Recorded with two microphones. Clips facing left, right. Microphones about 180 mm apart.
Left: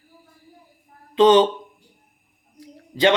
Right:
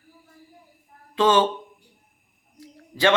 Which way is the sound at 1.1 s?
20° left (ahead or behind).